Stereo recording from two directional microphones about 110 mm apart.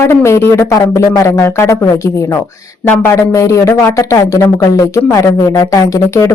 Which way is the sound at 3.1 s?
30° left (ahead or behind).